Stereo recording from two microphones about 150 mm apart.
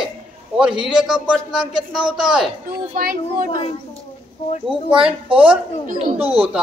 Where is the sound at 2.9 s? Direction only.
75° right (ahead or behind).